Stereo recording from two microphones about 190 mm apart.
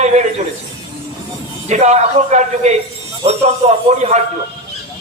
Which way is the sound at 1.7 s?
35° right (ahead or behind).